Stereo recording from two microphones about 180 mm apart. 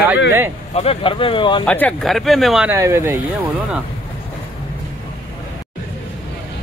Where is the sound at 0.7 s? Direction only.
35° left (ahead or behind).